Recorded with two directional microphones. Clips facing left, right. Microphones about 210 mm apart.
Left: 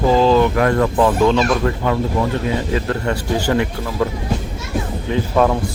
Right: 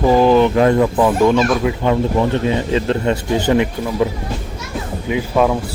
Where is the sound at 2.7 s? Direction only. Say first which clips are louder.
Right 3 dB; 25° right (ahead or behind).